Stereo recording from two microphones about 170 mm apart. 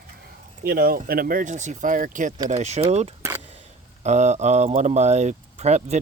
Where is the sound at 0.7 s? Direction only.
60° right (ahead or behind).